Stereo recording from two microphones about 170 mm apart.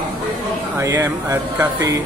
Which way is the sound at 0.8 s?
15° right (ahead or behind).